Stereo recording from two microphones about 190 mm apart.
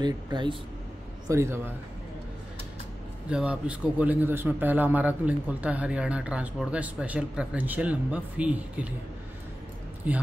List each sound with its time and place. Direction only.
0.0 s a man's voice: 25° right (ahead or behind)
3.3 s a man's voice: 5° right (ahead or behind)